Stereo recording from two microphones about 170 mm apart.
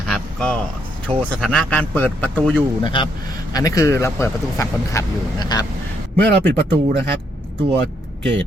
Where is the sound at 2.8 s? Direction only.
30° left (ahead or behind).